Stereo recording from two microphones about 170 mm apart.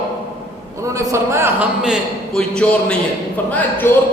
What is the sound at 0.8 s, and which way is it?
Speech, 20° right (ahead or behind).